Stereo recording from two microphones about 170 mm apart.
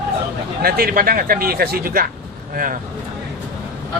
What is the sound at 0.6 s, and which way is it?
Speech, 65° right (ahead or behind).